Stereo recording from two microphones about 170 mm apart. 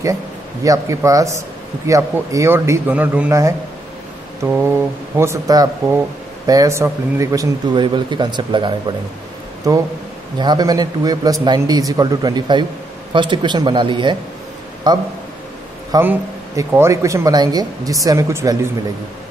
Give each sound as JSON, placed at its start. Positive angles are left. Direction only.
{"t": 0.7, "sound": "a man's voice", "side_deg": -20}